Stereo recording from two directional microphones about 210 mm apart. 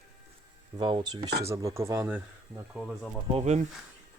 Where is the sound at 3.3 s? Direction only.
30° right (ahead or behind).